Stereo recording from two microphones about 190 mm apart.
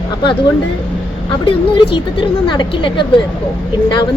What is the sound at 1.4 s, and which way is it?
A woman's voice, 30° left (ahead or behind).